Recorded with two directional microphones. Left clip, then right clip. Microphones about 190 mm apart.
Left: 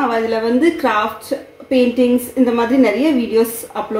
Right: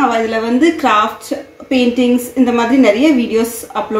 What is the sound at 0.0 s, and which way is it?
A woman's voice, 45° right (ahead or behind).